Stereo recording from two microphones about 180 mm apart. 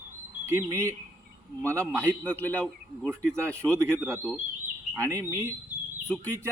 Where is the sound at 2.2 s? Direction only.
10° left (ahead or behind).